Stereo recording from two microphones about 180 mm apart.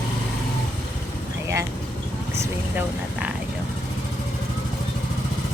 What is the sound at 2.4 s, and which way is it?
Speech, 10° right (ahead or behind).